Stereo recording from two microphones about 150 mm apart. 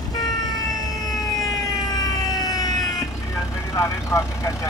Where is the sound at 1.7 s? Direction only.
25° left (ahead or behind).